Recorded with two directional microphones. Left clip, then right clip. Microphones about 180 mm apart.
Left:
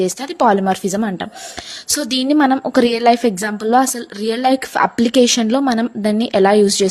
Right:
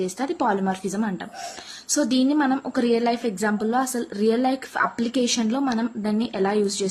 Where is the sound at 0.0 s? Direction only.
40° left (ahead or behind).